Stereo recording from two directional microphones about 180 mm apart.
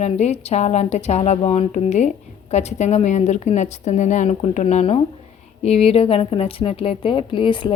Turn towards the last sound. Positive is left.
turn(degrees=25)  # may be behind; listen again after turning